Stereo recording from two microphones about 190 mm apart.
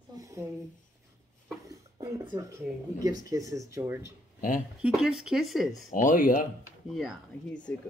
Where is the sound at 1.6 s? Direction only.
20° right (ahead or behind).